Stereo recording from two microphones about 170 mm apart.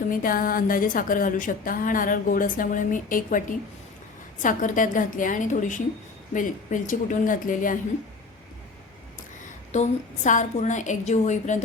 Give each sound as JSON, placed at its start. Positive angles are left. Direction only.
{"t": 0.1, "sound": "a woman's voice", "side_deg": 55}
{"t": 9.7, "sound": "a woman's voice", "side_deg": 45}